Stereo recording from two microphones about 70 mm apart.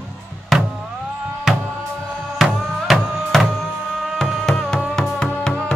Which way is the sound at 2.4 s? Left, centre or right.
Centre.